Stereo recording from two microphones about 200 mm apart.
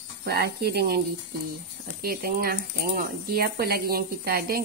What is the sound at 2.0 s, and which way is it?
Speech, 50° right (ahead or behind).